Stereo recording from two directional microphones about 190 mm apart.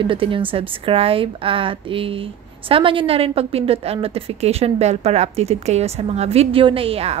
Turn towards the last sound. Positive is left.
turn(degrees=-30)  # may be behind; listen again after turning